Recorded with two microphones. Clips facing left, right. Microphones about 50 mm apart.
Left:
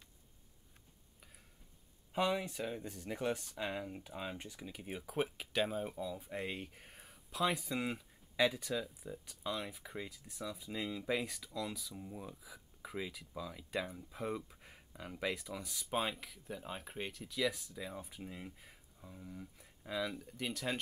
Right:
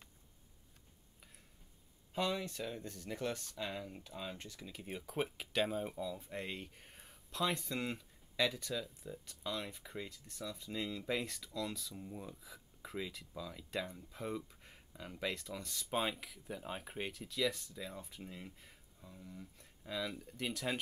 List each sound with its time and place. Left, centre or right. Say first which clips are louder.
2.1 s speech: left 3 dB; centre